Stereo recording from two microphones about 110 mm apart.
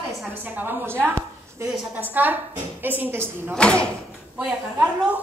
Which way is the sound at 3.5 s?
10° left (ahead or behind).